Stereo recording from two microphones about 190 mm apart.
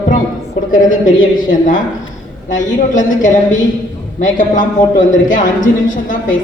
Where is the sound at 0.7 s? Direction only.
45° left (ahead or behind).